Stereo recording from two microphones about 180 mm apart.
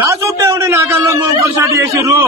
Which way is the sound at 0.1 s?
15° right (ahead or behind).